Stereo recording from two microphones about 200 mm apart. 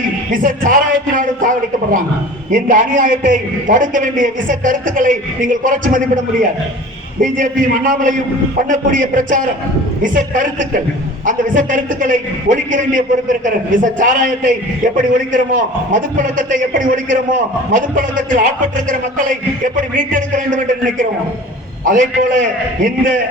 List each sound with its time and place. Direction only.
0.3 s a man's voice: 45° right (ahead or behind)
7.2 s a man's voice: 40° right (ahead or behind)
21.8 s a man's voice: 40° right (ahead or behind)